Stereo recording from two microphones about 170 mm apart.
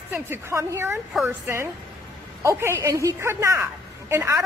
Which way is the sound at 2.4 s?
15° right (ahead or behind).